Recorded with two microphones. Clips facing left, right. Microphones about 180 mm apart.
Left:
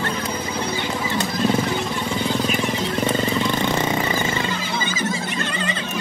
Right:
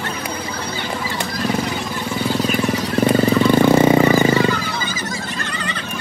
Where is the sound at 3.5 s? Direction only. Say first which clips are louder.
Right 9 dB; 50° right (ahead or behind).